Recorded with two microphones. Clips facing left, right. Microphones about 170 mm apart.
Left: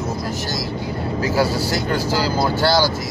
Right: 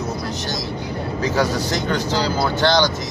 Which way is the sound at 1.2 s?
5° left (ahead or behind).